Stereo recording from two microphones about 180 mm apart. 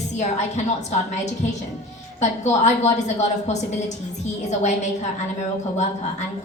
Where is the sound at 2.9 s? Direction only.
40° left (ahead or behind).